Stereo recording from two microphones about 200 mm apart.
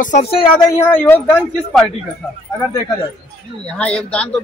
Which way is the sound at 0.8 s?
10° left (ahead or behind).